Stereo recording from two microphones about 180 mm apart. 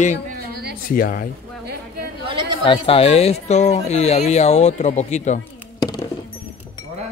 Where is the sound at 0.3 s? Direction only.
60° right (ahead or behind).